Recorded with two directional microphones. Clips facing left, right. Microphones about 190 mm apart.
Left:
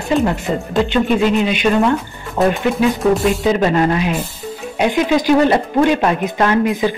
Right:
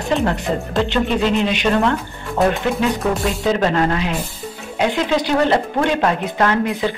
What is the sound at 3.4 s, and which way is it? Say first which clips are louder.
Speech: even; 15° left (ahead or behind).